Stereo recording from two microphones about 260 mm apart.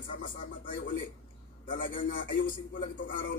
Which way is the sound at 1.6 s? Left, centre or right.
Left.